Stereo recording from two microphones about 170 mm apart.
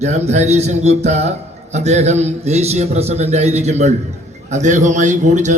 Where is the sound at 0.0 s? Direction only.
40° right (ahead or behind).